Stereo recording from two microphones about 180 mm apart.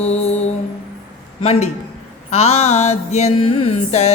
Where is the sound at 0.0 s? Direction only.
35° left (ahead or behind).